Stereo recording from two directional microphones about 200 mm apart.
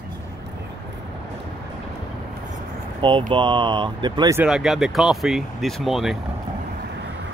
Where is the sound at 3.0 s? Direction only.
25° right (ahead or behind).